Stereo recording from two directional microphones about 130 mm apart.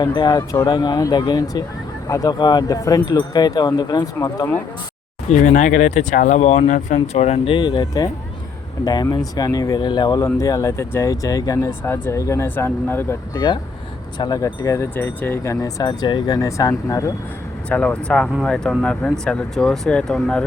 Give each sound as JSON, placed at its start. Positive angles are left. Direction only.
{"t": 0.2, "sound": "speech", "side_deg": 35}
{"t": 5.3, "sound": "speech", "side_deg": 70}
{"t": 6.7, "sound": "speech", "side_deg": 75}
{"t": 7.5, "sound": "speech", "side_deg": 35}
{"t": 14.2, "sound": "speech", "side_deg": 30}
{"t": 15.8, "sound": "speech", "side_deg": 35}
{"t": 17.7, "sound": "speech", "side_deg": 10}